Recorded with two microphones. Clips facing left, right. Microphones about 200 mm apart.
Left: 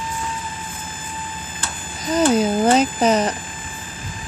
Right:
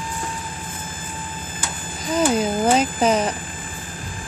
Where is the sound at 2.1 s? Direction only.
Centre (ahead or behind).